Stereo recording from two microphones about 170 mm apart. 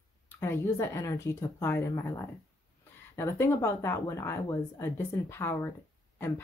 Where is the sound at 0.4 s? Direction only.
15° left (ahead or behind).